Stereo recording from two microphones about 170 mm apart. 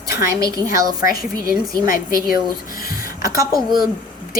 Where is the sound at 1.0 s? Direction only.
60° left (ahead or behind).